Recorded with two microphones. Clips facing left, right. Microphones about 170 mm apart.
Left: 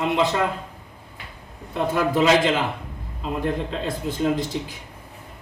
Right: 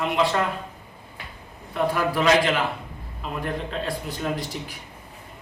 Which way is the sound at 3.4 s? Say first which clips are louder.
Left 2 dB; 20° left (ahead or behind).